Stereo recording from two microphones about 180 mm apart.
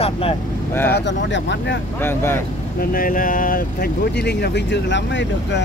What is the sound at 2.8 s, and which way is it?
Speech, 50° left (ahead or behind).